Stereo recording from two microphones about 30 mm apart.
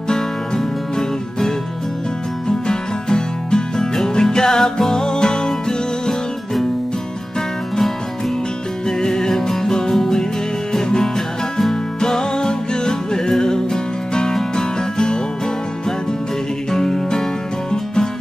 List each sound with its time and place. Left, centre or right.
2.4 s music: left
8.8 s music: left
16.7 s music: centre